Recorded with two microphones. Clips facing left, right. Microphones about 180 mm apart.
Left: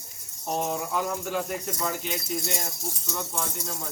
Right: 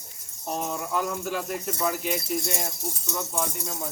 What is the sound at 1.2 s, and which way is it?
Speech, 5° right (ahead or behind).